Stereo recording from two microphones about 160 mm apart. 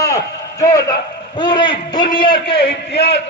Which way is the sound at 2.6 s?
90° left.